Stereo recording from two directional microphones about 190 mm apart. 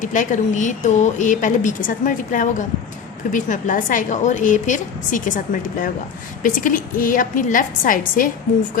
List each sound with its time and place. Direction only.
0.0 s a woman's voice: 40° left (ahead or behind)